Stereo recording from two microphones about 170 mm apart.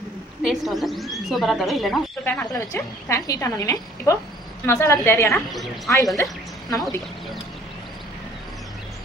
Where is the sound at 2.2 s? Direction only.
10° left (ahead or behind).